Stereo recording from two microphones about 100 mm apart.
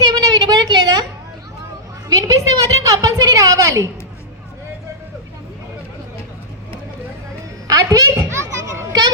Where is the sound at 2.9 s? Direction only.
35° right (ahead or behind).